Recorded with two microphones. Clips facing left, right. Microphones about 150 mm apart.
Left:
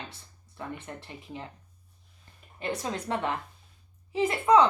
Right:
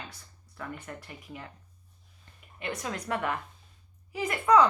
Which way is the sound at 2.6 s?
30° left (ahead or behind).